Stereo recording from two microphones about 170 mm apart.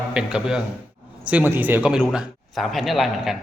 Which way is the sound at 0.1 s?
5° right (ahead or behind).